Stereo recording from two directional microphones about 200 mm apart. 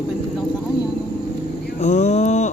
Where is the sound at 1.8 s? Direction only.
35° left (ahead or behind).